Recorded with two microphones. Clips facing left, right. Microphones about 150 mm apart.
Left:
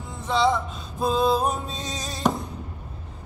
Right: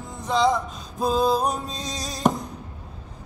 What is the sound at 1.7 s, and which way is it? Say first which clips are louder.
Music: even; 35° right (ahead or behind).